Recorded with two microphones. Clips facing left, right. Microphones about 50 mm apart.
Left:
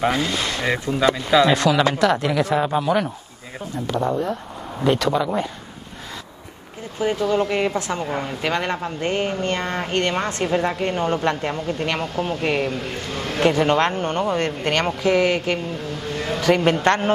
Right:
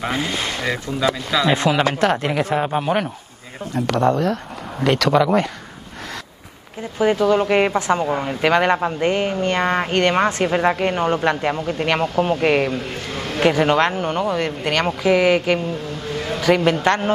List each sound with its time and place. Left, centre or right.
0.1 s speech: right
1.0 s speech: centre
1.7 s speech: right
2.8 s a man's voice: right
3.7 s speech: right
7.0 s speech: right
13.1 s a man's voice: centre